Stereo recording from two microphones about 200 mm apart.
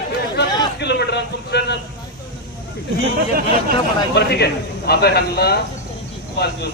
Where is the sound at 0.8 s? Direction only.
60° left (ahead or behind).